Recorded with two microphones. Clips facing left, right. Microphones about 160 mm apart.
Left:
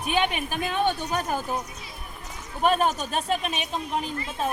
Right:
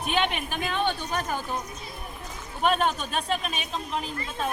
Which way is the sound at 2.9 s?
40° left (ahead or behind).